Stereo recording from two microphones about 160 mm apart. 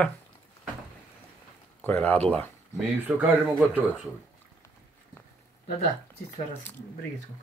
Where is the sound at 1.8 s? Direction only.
10° left (ahead or behind).